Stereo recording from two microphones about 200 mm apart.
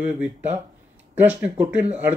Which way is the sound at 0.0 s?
10° right (ahead or behind).